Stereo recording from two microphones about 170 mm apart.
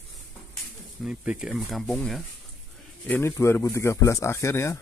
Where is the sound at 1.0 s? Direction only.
5° right (ahead or behind).